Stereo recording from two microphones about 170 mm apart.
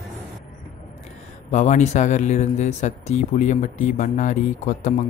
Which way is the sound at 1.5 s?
45° left (ahead or behind).